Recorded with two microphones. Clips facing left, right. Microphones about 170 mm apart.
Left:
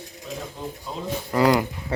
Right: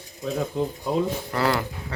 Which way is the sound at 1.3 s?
10° left (ahead or behind).